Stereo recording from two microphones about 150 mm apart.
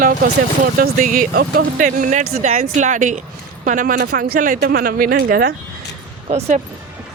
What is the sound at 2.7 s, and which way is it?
Speech, 55° right (ahead or behind).